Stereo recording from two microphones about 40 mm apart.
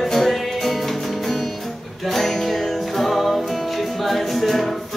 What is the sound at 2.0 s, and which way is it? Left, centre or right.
Music, centre.